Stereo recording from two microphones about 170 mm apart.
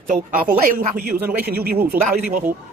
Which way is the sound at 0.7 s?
60° right (ahead or behind).